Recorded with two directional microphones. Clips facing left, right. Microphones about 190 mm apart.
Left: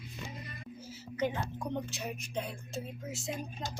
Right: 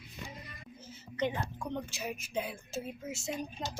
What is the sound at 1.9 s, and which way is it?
Speech, centre (ahead or behind).